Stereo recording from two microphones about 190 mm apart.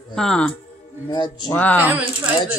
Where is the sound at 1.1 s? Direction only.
20° left (ahead or behind).